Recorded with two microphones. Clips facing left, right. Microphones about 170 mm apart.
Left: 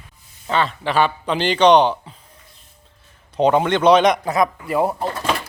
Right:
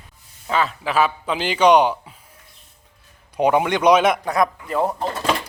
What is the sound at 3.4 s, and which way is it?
Speech, 10° right (ahead or behind).